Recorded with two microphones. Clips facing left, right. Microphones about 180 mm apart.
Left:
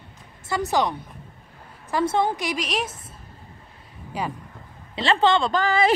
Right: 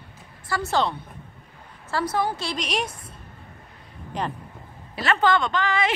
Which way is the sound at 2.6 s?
Centre (ahead or behind).